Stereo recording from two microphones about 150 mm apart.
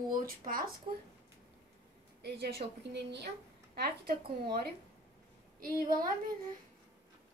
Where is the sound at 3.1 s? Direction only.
90° right.